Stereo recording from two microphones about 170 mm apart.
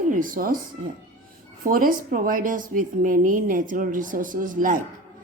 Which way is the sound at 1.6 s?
55° right (ahead or behind).